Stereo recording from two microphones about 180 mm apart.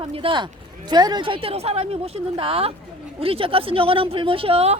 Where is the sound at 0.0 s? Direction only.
30° right (ahead or behind).